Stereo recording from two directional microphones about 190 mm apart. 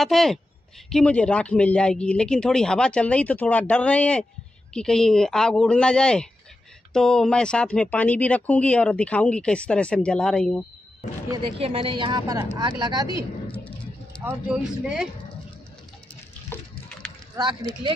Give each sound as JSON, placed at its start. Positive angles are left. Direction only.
{"t": 0.0, "sound": "speech", "side_deg": 0}
{"t": 11.6, "sound": "a woman's voice", "side_deg": -30}
{"t": 14.2, "sound": "speech", "side_deg": -5}
{"t": 16.5, "sound": "a sound", "side_deg": 10}
{"t": 17.4, "sound": "a woman's voice", "side_deg": -25}